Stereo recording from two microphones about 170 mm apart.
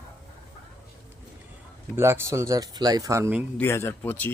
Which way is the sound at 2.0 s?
15° right (ahead or behind).